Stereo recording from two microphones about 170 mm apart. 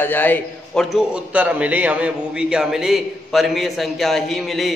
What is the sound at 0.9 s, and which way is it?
A man's voice, 5° right (ahead or behind).